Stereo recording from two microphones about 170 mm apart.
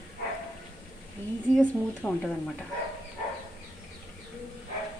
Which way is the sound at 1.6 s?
5° left (ahead or behind).